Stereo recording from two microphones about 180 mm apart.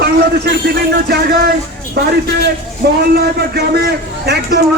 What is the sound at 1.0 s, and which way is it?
A man's voice, 60° right (ahead or behind).